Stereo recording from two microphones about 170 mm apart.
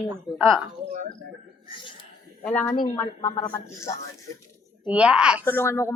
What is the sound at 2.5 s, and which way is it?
Speech, 10° left (ahead or behind).